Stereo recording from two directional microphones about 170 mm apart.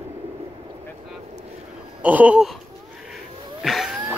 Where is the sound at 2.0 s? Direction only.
10° right (ahead or behind).